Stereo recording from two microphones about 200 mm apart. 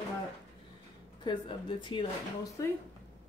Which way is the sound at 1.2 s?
25° left (ahead or behind).